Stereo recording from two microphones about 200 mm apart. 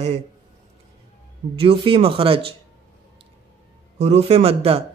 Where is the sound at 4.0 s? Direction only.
30° right (ahead or behind).